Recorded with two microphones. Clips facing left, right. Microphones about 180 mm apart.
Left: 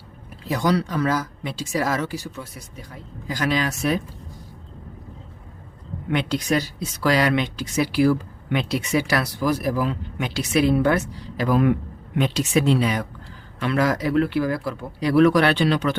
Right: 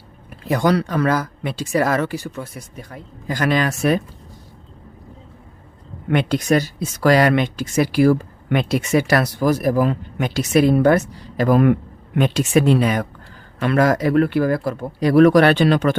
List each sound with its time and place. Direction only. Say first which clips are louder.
0.4 s speech: right 4 dB; 60° right (ahead or behind)
6.1 s speech: right 5 dB; 50° right (ahead or behind)